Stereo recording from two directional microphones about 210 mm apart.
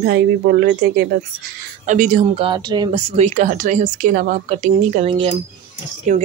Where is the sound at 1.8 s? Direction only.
40° right (ahead or behind).